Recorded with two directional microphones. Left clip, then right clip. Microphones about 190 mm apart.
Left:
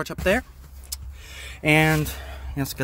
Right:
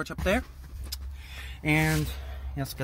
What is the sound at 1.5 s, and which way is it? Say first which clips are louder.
Speech: left 7 dB; 30° left (ahead or behind).